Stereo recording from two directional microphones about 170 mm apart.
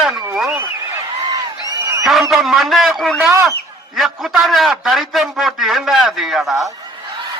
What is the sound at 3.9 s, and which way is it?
A man's voice, centre (ahead or behind).